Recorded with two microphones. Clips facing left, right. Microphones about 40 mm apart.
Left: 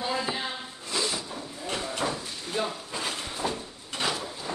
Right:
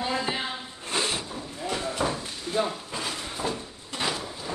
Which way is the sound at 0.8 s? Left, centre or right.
Right.